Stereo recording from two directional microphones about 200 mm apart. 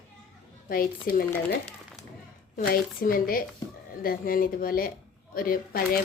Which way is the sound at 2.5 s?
45° left (ahead or behind).